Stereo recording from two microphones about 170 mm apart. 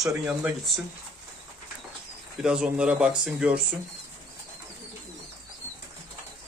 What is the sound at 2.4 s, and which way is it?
Speech, 5° right (ahead or behind).